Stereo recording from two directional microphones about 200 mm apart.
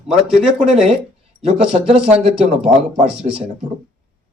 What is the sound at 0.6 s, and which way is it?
Speech, 35° right (ahead or behind).